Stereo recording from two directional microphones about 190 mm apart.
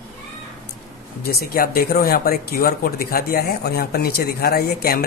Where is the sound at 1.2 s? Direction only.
50° left (ahead or behind).